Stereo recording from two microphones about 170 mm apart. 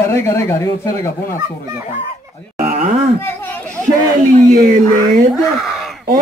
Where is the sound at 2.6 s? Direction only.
45° right (ahead or behind).